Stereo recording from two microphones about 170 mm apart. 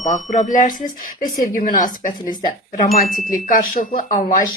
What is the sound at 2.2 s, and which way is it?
Speech, 25° left (ahead or behind).